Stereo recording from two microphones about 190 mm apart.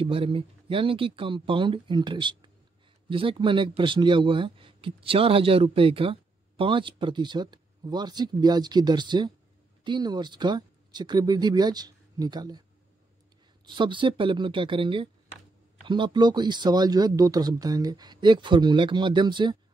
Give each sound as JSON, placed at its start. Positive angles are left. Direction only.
{"t": 0.0, "sound": "speech", "side_deg": -30}
{"t": 13.7, "sound": "speech", "side_deg": -25}